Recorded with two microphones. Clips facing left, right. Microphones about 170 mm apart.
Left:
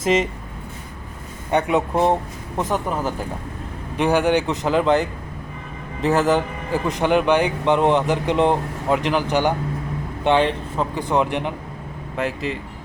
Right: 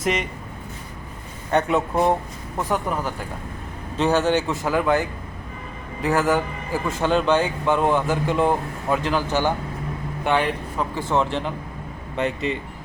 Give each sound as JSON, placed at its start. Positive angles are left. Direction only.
{"t": 0.0, "sound": "speech", "side_deg": 25}
{"t": 1.5, "sound": "speech", "side_deg": 15}
{"t": 2.9, "sound": "speech", "side_deg": 10}
{"t": 12.1, "sound": "speech", "side_deg": 0}